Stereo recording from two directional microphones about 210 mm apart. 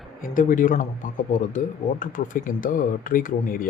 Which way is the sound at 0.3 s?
40° left (ahead or behind).